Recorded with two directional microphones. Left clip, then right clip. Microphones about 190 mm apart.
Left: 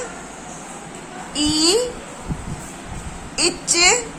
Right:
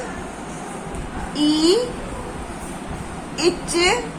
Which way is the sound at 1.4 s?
30° left (ahead or behind).